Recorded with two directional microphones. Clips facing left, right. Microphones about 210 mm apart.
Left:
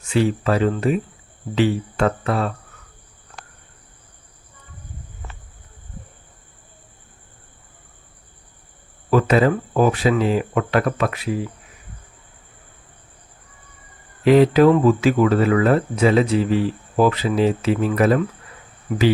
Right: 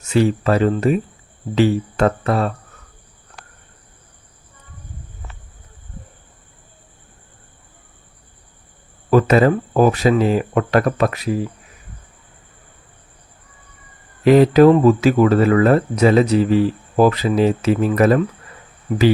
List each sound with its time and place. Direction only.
0.0 s speech: 40° right (ahead or behind)
9.0 s speech: 45° right (ahead or behind)
14.3 s speech: 40° right (ahead or behind)